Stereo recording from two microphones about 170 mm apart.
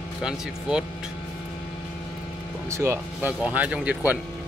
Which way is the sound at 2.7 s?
15° right (ahead or behind).